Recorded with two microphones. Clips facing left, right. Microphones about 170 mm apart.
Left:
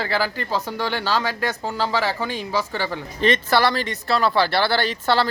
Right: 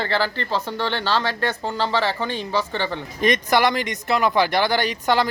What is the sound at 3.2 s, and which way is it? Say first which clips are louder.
Speech: even; 15° right (ahead or behind).